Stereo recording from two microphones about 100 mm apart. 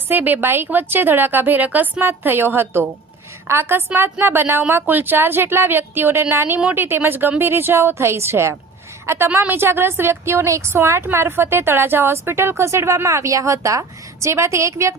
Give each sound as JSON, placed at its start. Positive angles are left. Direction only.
{"t": 0.1, "sound": "a woman's voice", "side_deg": -20}